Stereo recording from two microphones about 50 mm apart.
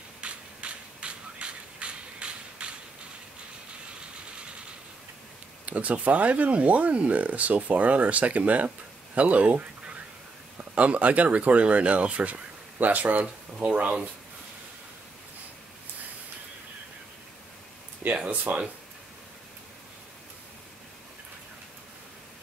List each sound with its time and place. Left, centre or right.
0.2 s a sound: right
5.7 s speech: right
13.7 s speech: centre
18.1 s speech: right